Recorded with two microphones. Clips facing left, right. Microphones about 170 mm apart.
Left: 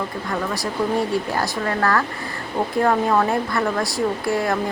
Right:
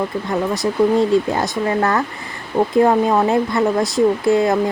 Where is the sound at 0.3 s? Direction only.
20° right (ahead or behind).